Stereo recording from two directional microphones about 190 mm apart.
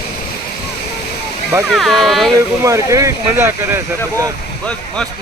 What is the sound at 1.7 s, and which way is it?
Speech, centre (ahead or behind).